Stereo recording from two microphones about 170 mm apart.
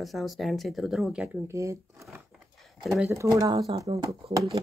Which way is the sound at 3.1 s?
20° right (ahead or behind).